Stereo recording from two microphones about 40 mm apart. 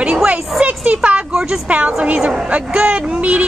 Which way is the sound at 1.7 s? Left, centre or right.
Right.